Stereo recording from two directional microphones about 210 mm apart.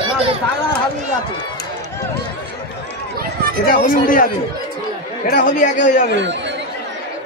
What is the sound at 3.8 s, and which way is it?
Speech, 40° left (ahead or behind).